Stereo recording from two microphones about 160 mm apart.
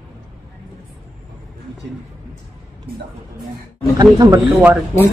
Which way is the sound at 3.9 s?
25° right (ahead or behind).